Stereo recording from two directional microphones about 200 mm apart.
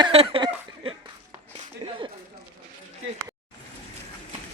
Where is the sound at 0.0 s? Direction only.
25° right (ahead or behind).